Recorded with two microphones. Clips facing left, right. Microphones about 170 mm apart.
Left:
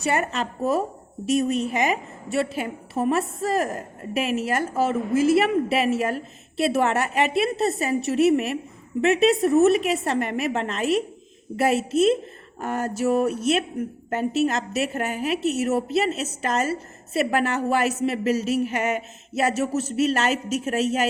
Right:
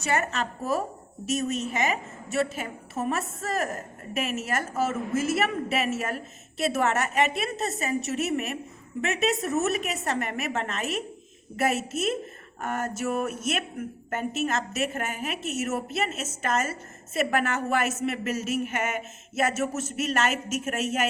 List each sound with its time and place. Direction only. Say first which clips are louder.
0.0 s a woman's voice: left 3 dB; 35° left (ahead or behind)
2.3 s a woman's voice: left 3 dB; 30° left (ahead or behind)